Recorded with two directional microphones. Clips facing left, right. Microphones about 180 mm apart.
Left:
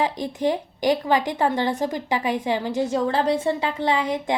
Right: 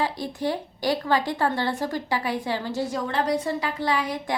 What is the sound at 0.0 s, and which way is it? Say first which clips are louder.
Speech: left 4 dB; 20° left (ahead or behind).